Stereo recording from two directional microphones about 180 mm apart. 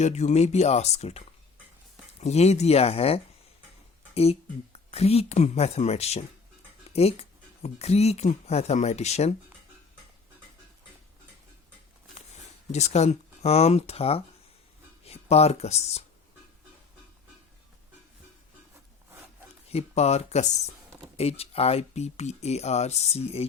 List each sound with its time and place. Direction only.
0.0 s speech: 40° left (ahead or behind)
2.2 s speech: 35° left (ahead or behind)
12.7 s speech: 40° left (ahead or behind)
19.7 s speech: 35° left (ahead or behind)